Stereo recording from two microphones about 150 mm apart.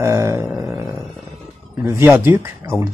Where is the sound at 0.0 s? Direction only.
20° right (ahead or behind).